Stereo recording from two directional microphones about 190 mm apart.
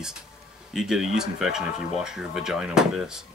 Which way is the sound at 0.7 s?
Centre (ahead or behind).